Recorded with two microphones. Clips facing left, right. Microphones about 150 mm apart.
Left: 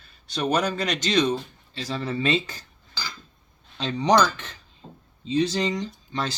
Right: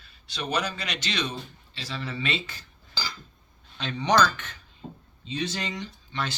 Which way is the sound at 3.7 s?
35° left (ahead or behind).